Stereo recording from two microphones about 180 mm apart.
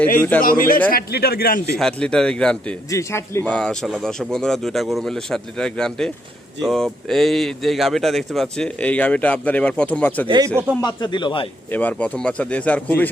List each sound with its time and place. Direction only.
0.2 s speech: 10° left (ahead or behind)
0.4 s a man's voice: 50° left (ahead or behind)
1.8 s speech: 5° left (ahead or behind)
2.9 s speech: 15° left (ahead or behind)
10.2 s speech: 25° right (ahead or behind)
10.8 s speech: 25° left (ahead or behind)
11.7 s speech: 10° left (ahead or behind)